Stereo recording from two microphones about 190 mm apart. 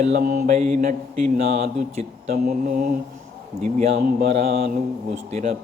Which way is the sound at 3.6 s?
35° right (ahead or behind).